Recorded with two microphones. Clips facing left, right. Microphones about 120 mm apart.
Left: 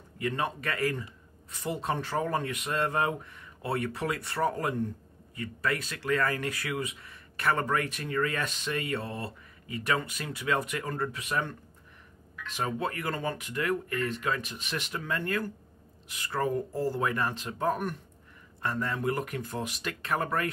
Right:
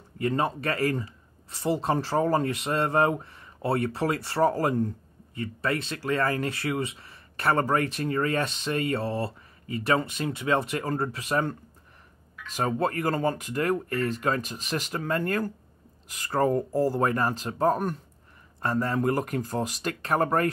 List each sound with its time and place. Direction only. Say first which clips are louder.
0.2 s speech: right 5 dB; 35° right (ahead or behind)
12.5 s speech: right 6 dB; 40° right (ahead or behind)